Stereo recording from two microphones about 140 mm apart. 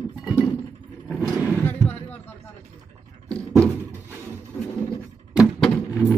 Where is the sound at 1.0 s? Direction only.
5° right (ahead or behind).